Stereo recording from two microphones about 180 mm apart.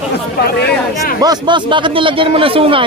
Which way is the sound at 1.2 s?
25° right (ahead or behind).